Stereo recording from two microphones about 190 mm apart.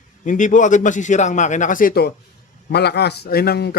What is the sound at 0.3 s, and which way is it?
A man's voice, 40° left (ahead or behind).